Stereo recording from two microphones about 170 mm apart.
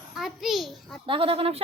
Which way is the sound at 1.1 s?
35° right (ahead or behind).